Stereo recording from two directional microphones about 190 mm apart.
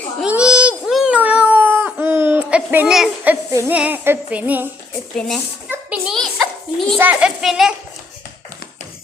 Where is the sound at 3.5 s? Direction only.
10° right (ahead or behind).